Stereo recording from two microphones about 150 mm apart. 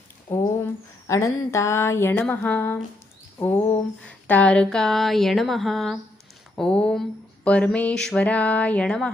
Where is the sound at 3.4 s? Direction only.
15° left (ahead or behind).